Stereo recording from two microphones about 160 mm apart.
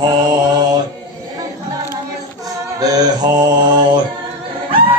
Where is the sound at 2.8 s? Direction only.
25° right (ahead or behind).